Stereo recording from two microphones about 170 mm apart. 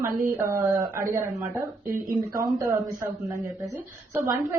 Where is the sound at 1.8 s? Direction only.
55° right (ahead or behind).